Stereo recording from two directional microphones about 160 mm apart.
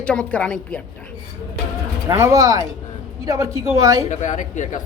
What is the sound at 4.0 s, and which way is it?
Speech, 45° left (ahead or behind).